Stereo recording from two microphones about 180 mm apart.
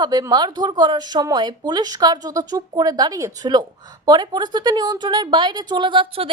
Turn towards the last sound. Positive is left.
turn(degrees=-25)  # may be behind; listen again after turning